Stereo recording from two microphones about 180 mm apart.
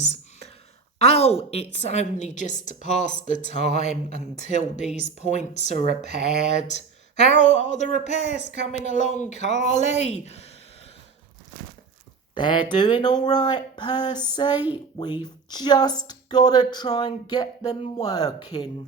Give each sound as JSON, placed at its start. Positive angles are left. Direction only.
{"t": 0.0, "sound": "whispering", "side_deg": 35}
{"t": 1.0, "sound": "speech", "side_deg": 35}
{"t": 12.3, "sound": "speech", "side_deg": 25}